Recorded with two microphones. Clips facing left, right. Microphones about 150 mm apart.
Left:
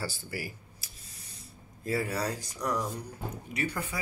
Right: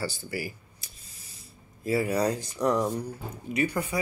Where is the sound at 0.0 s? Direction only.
Centre (ahead or behind).